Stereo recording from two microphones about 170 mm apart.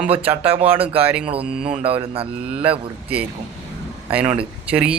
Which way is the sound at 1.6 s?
35° right (ahead or behind).